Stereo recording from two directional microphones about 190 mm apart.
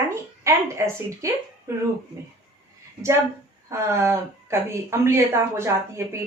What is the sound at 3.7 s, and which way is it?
Speech, 15° right (ahead or behind).